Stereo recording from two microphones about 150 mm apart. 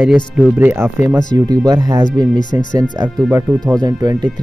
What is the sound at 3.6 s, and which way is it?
Speech, 25° right (ahead or behind).